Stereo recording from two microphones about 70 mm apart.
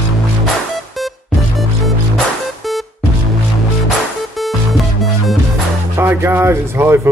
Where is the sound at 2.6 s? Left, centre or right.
Centre.